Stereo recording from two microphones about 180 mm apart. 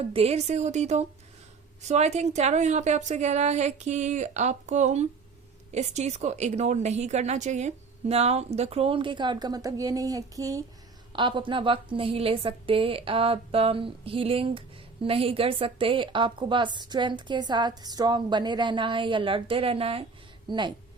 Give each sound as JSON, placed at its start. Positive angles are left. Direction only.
{"t": 0.1, "sound": "a woman's voice", "side_deg": -35}